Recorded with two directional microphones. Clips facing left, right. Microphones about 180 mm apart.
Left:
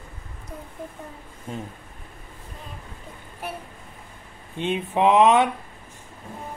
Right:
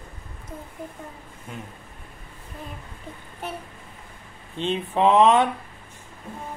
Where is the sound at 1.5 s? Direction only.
30° left (ahead or behind).